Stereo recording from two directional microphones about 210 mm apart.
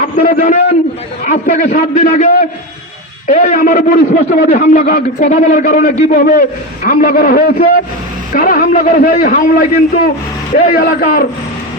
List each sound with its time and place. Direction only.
0.2 s a man's voice: 35° left (ahead or behind)